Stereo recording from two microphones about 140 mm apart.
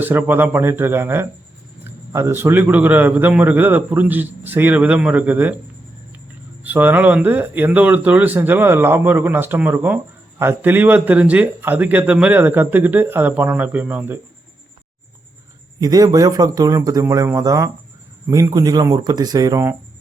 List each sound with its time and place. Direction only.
0.0 s speech: 15° right (ahead or behind)
6.7 s speech: 15° right (ahead or behind)
15.8 s speech: 25° right (ahead or behind)